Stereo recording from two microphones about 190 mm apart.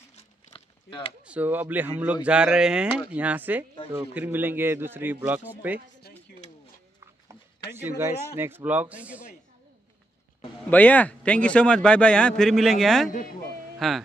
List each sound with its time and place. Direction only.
0.1 s a sound: 25° left (ahead or behind)
1.2 s a man's voice: 5° right (ahead or behind)
8.0 s a man's voice: 10° right (ahead or behind)
10.7 s a man's voice: 10° left (ahead or behind)